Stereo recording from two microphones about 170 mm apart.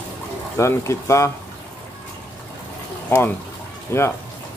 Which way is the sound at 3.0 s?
10° left (ahead or behind).